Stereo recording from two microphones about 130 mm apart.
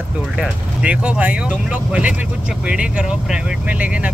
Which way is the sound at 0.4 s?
10° right (ahead or behind).